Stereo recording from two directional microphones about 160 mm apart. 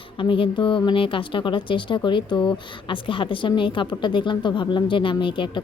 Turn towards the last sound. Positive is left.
turn(degrees=30)  # may be behind; listen again after turning